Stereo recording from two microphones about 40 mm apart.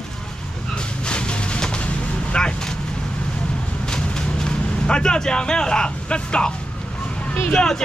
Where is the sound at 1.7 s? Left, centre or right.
Left.